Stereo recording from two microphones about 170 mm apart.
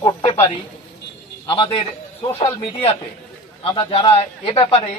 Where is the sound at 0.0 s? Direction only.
25° left (ahead or behind).